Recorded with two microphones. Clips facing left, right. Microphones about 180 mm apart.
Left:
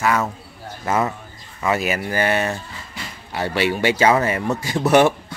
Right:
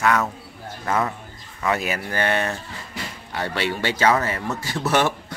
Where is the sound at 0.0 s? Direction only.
5° left (ahead or behind).